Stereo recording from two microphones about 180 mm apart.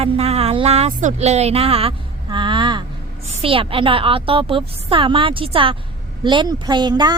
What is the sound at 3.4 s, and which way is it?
Speech, 30° right (ahead or behind).